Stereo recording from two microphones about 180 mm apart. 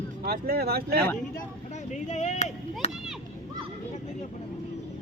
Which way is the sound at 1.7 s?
40° left (ahead or behind).